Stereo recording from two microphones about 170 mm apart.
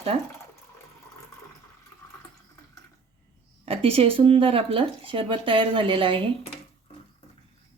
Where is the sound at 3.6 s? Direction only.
35° right (ahead or behind).